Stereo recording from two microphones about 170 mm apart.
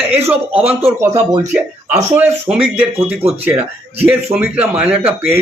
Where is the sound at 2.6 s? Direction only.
30° right (ahead or behind).